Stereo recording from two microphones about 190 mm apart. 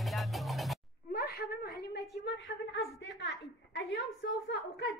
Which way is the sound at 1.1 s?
55° left (ahead or behind).